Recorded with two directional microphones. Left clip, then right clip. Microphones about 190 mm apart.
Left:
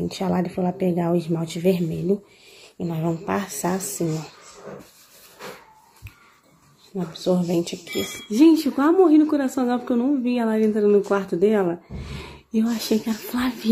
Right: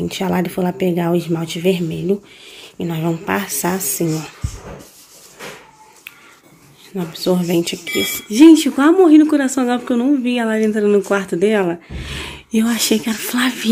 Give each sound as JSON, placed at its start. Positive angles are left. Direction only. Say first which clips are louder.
{"t": 0.0, "sound": "speech", "louder": "right 5 dB", "side_deg": 5}
{"t": 7.0, "sound": "speech", "louder": "right 5 dB", "side_deg": 5}